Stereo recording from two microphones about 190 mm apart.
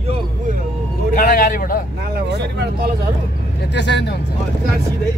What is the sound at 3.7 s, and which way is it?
Speech, 65° left (ahead or behind).